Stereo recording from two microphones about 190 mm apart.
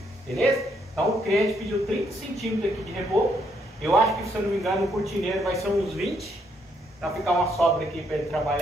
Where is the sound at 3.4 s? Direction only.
Centre (ahead or behind).